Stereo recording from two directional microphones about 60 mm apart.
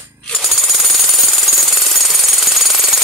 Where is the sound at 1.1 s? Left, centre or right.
Centre.